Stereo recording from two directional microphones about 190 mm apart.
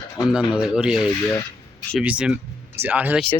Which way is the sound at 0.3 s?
5° right (ahead or behind).